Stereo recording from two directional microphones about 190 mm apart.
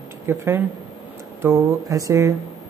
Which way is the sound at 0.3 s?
15° right (ahead or behind).